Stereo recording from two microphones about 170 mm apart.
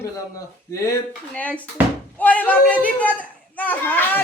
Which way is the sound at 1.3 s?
10° left (ahead or behind).